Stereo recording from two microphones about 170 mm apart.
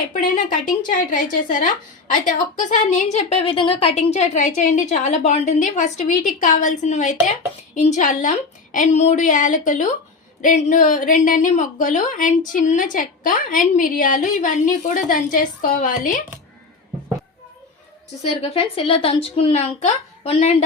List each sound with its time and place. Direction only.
0.9 s a woman's voice: 55° left (ahead or behind)
18.3 s a woman's voice: 35° left (ahead or behind)